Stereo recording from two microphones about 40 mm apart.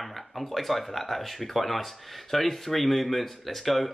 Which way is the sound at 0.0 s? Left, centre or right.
Centre.